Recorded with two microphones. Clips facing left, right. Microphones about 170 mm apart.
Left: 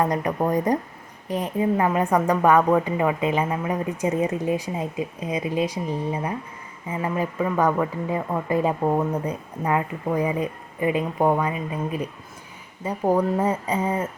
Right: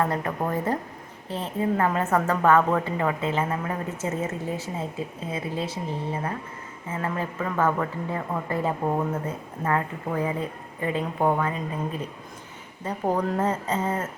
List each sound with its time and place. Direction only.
0.0 s speech: 15° left (ahead or behind)